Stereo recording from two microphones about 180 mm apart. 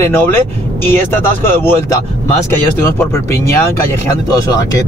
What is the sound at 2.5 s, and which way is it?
Speech, 15° left (ahead or behind).